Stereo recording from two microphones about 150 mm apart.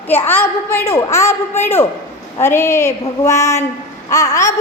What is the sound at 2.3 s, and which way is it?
Female singing, 15° left (ahead or behind).